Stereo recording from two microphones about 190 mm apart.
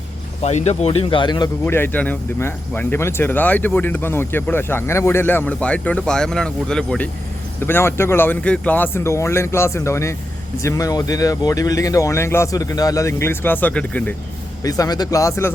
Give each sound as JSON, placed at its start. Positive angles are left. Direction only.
{"t": 0.4, "sound": "speech", "side_deg": 35}
{"t": 1.6, "sound": "speech", "side_deg": 10}
{"t": 14.6, "sound": "speech", "side_deg": 20}